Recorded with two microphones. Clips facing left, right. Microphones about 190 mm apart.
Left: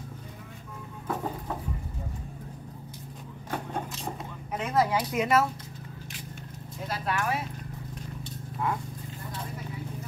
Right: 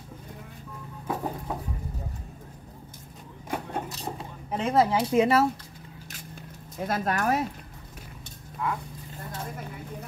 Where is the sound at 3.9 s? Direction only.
35° right (ahead or behind).